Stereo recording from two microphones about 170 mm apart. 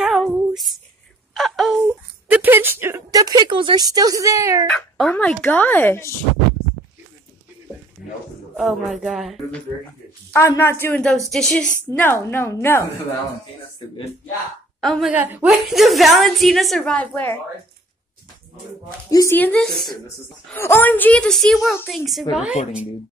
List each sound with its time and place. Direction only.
0.0 s a sound: centre (ahead or behind)
1.3 s wail: centre (ahead or behind)
2.3 s speech: 10° right (ahead or behind)
4.6 s speech: 5° left (ahead or behind)
8.0 s a sound: 5° right (ahead or behind)
8.5 s a woman's voice: centre (ahead or behind)
10.3 s speech: 15° left (ahead or behind)
11.9 s speech: 10° left (ahead or behind)
14.8 s a woman's voice: centre (ahead or behind)
19.0 s speech: 15° left (ahead or behind)
20.5 s a woman's voice: 15° left (ahead or behind); by 22.6 s 5° right (ahead or behind)